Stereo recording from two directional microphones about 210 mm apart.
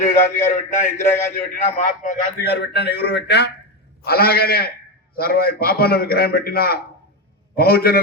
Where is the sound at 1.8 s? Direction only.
40° left (ahead or behind).